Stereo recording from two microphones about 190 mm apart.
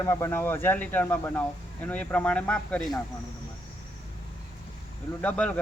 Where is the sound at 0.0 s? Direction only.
15° left (ahead or behind).